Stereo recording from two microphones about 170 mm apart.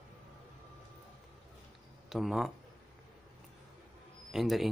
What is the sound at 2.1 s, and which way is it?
Speech, centre (ahead or behind).